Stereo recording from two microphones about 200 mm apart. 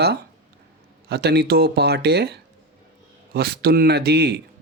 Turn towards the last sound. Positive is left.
turn(degrees=-55)  # may be behind; listen again after turning